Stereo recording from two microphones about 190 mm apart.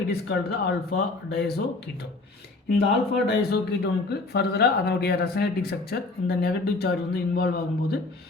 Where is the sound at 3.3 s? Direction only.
60° left (ahead or behind).